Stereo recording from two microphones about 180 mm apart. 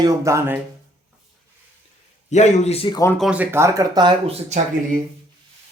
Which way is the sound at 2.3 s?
40° left (ahead or behind).